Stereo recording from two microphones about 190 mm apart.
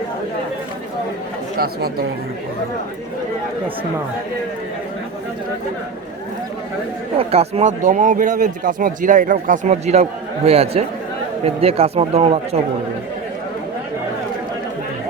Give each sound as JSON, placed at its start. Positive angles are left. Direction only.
{"t": 1.5, "sound": "speech", "side_deg": -55}
{"t": 7.2, "sound": "speech", "side_deg": -30}